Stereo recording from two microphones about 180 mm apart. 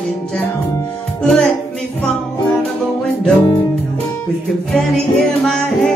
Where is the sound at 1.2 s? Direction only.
5° left (ahead or behind).